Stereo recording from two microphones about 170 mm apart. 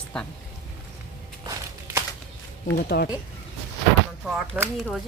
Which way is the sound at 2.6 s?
65° left (ahead or behind).